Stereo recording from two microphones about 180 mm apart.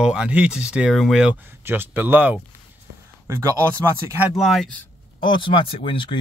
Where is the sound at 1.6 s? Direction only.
10° right (ahead or behind).